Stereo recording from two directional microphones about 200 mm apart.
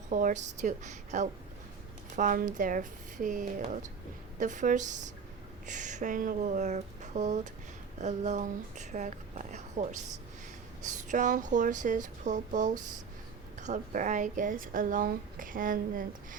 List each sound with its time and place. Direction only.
0.1 s speech: 40° right (ahead or behind)